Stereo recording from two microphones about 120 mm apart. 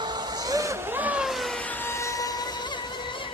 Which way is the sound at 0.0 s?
35° right (ahead or behind).